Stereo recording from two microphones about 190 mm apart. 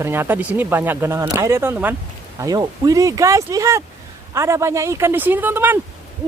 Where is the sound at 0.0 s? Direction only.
10° right (ahead or behind).